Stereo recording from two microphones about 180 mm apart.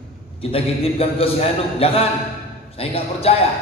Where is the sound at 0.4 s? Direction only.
30° left (ahead or behind).